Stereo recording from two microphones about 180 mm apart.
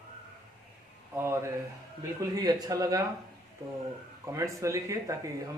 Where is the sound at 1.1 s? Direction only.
15° right (ahead or behind).